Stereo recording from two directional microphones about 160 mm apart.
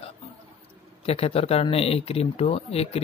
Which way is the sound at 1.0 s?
35° left (ahead or behind).